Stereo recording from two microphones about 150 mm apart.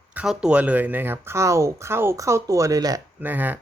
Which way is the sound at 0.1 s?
10° right (ahead or behind).